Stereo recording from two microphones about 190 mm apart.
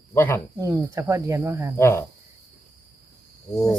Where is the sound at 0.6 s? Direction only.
15° right (ahead or behind).